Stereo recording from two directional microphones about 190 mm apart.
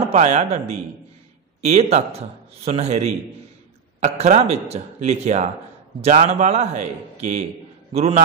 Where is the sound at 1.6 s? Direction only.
35° right (ahead or behind).